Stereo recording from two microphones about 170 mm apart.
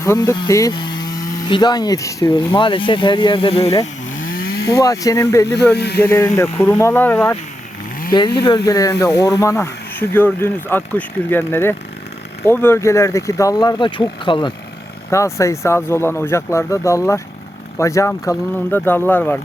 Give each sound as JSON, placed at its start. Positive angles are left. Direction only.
{"t": 0.0, "sound": "speech", "side_deg": 15}
{"t": 2.2, "sound": "speech", "side_deg": 30}
{"t": 4.4, "sound": "a sound", "side_deg": 65}
{"t": 4.7, "sound": "speech", "side_deg": 20}
{"t": 5.7, "sound": "speech", "side_deg": 75}
{"t": 6.0, "sound": "speech", "side_deg": 20}
{"t": 8.4, "sound": "speech", "side_deg": 25}
{"t": 15.1, "sound": "speech", "side_deg": 15}